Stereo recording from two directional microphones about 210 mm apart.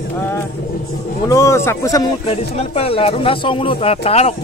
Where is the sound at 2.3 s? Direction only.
30° left (ahead or behind).